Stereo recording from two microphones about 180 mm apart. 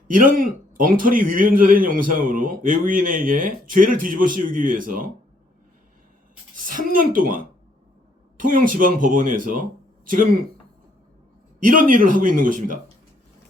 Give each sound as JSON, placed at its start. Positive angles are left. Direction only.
{"t": 0.1, "sound": "a man's voice", "side_deg": -50}
{"t": 6.7, "sound": "a man's voice", "side_deg": -50}
{"t": 11.6, "sound": "a man's voice", "side_deg": -50}